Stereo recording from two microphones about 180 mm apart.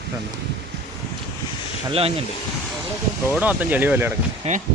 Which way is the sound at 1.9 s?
30° right (ahead or behind).